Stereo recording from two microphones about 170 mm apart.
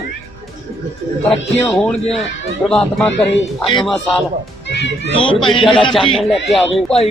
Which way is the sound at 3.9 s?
Centre (ahead or behind).